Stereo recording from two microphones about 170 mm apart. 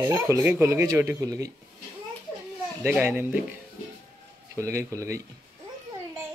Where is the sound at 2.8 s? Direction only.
15° right (ahead or behind).